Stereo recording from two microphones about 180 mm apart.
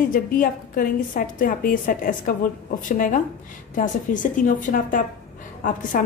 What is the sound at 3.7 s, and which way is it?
A woman's voice, 45° left (ahead or behind).